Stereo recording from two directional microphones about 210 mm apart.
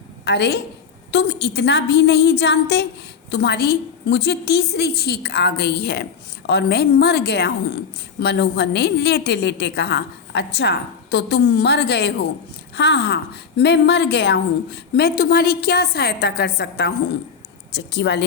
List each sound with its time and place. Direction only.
0.3 s a woman's voice: 50° left (ahead or behind)